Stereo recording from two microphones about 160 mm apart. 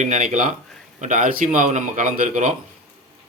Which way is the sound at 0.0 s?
50° right (ahead or behind).